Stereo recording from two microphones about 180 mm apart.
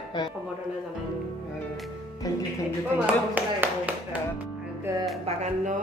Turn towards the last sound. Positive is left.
turn(degrees=-40)  # may be behind; listen again after turning